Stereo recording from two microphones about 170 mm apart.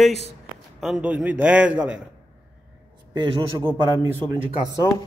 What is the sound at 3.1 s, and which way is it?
Speech, 25° right (ahead or behind).